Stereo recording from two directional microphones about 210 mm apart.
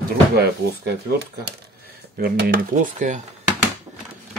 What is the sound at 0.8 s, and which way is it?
Speech, 50° right (ahead or behind).